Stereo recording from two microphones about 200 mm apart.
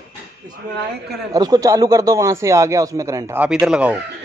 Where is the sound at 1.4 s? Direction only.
20° right (ahead or behind).